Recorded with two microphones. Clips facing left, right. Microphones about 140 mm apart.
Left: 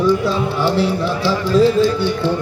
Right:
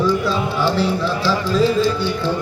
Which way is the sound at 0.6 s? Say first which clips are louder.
Left 2 dB; 65° left (ahead or behind).